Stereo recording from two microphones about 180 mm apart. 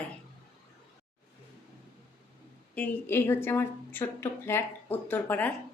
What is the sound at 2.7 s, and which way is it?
A woman's voice, 10° left (ahead or behind).